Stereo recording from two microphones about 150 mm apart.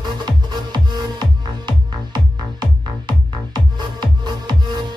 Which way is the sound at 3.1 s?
30° right (ahead or behind).